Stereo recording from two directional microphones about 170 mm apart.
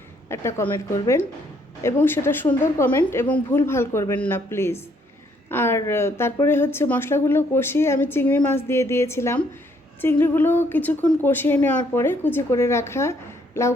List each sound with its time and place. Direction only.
0.3 s a woman's voice: 15° left (ahead or behind)